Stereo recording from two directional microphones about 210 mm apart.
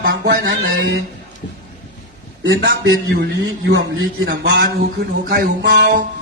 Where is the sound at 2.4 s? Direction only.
60° right (ahead or behind).